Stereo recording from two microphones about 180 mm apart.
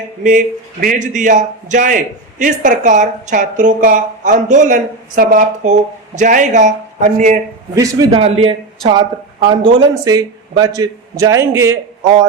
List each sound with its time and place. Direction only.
0.2 s speech: 45° right (ahead or behind)
7.8 s a man's voice: 20° right (ahead or behind)
8.2 s a man's voice: 30° right (ahead or behind); by 12.2 s 15° right (ahead or behind)